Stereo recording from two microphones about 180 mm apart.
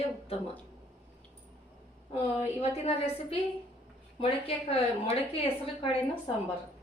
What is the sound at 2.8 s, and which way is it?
Speech, 35° left (ahead or behind).